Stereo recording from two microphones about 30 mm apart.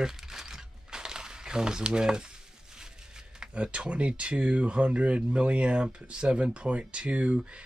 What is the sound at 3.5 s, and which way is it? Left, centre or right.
Speech, right.